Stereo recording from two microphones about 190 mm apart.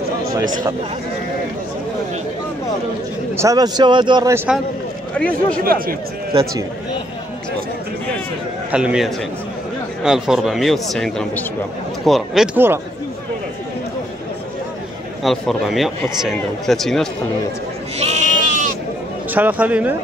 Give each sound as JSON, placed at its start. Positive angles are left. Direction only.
{"t": 3.3, "sound": "a man's voice", "side_deg": -20}
{"t": 5.1, "sound": "speech", "side_deg": 5}
{"t": 5.6, "sound": "speech", "side_deg": -50}
{"t": 8.7, "sound": "speech", "side_deg": -5}
{"t": 12.5, "sound": "speech", "side_deg": -10}
{"t": 15.2, "sound": "speech", "side_deg": 0}
{"t": 17.9, "sound": "sheep", "side_deg": -35}
{"t": 19.3, "sound": "speech", "side_deg": -10}